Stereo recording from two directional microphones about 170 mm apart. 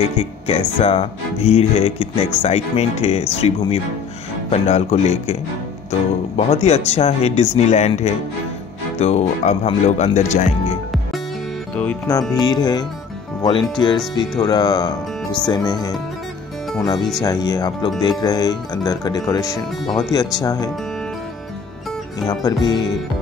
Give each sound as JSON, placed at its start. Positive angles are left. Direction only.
{"t": 0.2, "sound": "speech", "side_deg": 35}
{"t": 11.7, "sound": "music", "side_deg": 10}
{"t": 12.1, "sound": "speech", "side_deg": 25}
{"t": 17.2, "sound": "speech", "side_deg": 25}
{"t": 22.2, "sound": "speech", "side_deg": 25}